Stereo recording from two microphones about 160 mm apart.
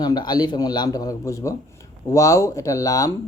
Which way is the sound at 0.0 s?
25° left (ahead or behind).